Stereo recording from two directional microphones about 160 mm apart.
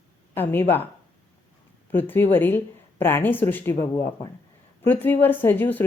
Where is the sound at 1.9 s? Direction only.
15° left (ahead or behind).